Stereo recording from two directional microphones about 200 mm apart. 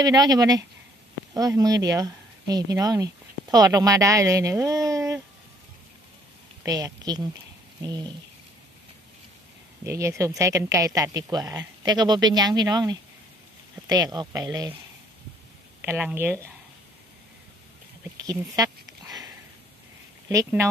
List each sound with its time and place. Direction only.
0.0 s speech: 20° right (ahead or behind)
6.6 s speech: 20° right (ahead or behind)
9.8 s speech: 15° right (ahead or behind)
15.8 s speech: 5° right (ahead or behind)
18.2 s a sound: 15° right (ahead or behind)
20.2 s speech: 15° right (ahead or behind)